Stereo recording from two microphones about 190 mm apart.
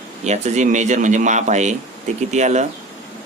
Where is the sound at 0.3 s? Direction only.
35° right (ahead or behind).